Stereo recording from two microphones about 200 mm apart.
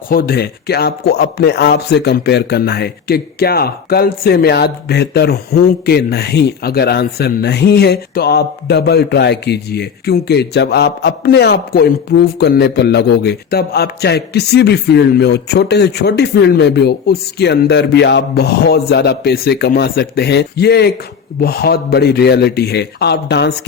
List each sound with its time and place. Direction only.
0.1 s a man's voice: 50° left (ahead or behind)